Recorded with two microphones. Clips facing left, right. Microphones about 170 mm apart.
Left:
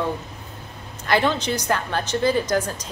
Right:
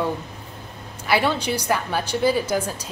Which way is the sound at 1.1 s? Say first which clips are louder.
Even; 10° right (ahead or behind).